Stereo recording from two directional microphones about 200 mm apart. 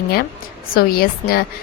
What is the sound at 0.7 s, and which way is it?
Speech, 50° left (ahead or behind).